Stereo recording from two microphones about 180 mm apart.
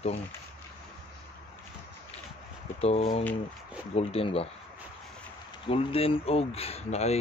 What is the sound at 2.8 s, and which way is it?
Speech, 35° left (ahead or behind).